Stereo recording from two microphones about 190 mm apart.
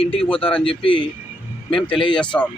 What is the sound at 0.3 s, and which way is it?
Speech, 30° left (ahead or behind).